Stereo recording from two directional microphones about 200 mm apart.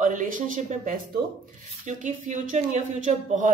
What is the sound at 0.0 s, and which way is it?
Speech, 40° right (ahead or behind).